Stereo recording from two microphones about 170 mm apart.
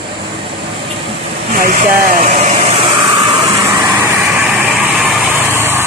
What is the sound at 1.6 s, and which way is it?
Vehicle, 55° right (ahead or behind).